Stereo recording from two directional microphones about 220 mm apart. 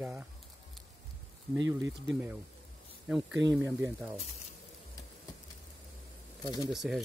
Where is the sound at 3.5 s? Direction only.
5° right (ahead or behind).